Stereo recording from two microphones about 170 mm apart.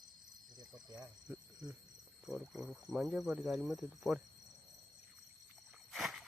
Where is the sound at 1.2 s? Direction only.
5° right (ahead or behind).